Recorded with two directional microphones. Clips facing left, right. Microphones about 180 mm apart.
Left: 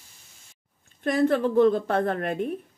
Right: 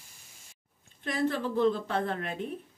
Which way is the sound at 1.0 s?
55° left (ahead or behind).